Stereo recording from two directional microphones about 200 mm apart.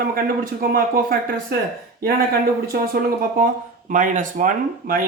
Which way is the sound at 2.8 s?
45° right (ahead or behind).